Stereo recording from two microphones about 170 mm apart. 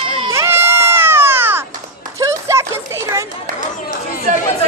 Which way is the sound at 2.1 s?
15° right (ahead or behind).